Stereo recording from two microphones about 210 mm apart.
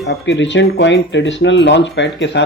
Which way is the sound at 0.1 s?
60° left (ahead or behind).